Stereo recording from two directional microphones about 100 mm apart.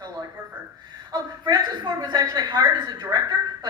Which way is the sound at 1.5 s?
40° right (ahead or behind).